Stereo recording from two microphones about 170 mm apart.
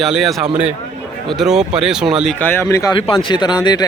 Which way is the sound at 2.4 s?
15° left (ahead or behind).